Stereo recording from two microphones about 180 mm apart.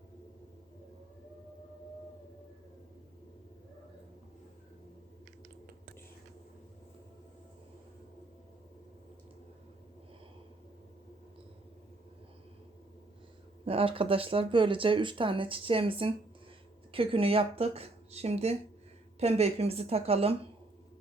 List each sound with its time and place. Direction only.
13.7 s speech: 30° right (ahead or behind)